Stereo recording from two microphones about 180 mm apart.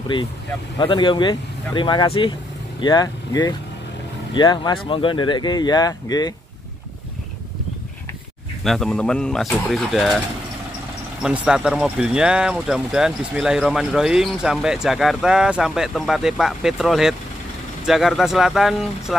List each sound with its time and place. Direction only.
0.7 s speech: 25° left (ahead or behind)
8.6 s speech: centre (ahead or behind)
11.2 s speech: 5° right (ahead or behind)